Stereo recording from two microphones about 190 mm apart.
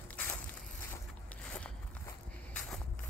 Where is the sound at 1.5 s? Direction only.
5° left (ahead or behind).